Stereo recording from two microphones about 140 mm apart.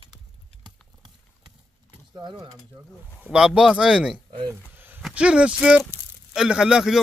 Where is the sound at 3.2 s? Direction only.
5° right (ahead or behind).